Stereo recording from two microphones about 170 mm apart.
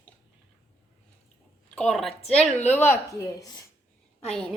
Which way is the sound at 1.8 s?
5° left (ahead or behind).